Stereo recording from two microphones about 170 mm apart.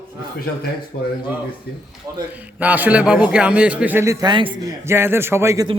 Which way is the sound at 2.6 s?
10° right (ahead or behind).